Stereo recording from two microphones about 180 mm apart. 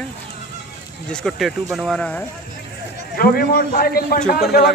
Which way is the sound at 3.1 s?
55° left (ahead or behind).